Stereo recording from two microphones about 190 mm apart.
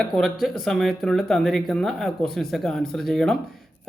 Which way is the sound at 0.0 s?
Centre (ahead or behind).